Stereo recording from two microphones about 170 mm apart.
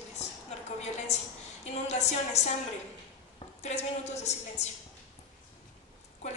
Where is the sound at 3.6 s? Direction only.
40° left (ahead or behind).